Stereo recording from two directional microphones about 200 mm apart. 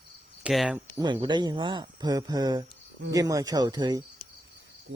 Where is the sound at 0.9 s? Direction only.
20° right (ahead or behind).